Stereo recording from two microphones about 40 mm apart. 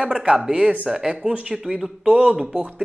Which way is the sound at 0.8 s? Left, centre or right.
Centre.